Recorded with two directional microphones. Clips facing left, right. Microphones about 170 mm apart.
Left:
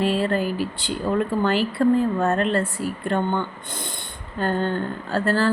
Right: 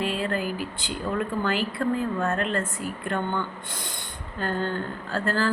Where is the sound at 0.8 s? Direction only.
35° left (ahead or behind).